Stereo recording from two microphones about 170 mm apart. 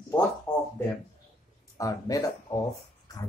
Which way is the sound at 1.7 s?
20° left (ahead or behind).